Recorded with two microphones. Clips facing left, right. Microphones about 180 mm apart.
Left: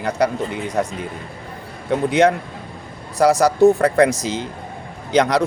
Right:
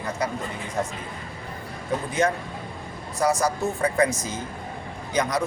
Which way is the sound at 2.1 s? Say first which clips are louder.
Left 8 dB; 75° left (ahead or behind).